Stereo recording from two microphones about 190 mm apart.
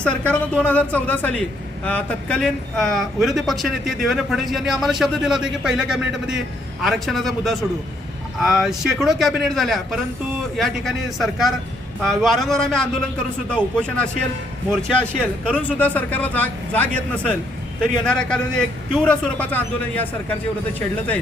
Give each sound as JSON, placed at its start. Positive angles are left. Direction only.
{"t": 0.0, "sound": "speech", "side_deg": 5}
{"t": 15.4, "sound": "speech", "side_deg": 10}